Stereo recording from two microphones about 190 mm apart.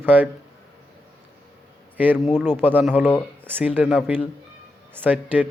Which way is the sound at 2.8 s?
5° left (ahead or behind).